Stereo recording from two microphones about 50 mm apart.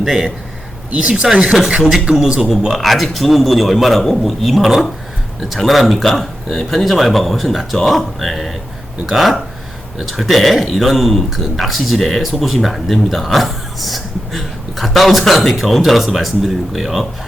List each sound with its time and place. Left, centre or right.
0.0 s a man's voice: centre
2.7 s speech: centre